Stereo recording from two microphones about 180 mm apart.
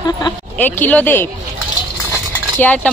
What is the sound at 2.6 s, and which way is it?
Speech, 10° left (ahead or behind).